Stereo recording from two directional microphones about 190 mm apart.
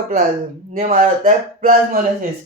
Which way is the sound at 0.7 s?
45° right (ahead or behind).